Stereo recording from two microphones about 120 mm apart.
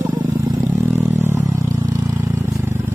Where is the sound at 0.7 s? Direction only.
15° right (ahead or behind).